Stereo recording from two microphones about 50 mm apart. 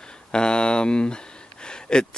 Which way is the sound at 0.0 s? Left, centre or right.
Centre.